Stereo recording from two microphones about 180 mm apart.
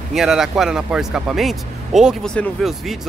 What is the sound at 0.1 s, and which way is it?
Speech, centre (ahead or behind).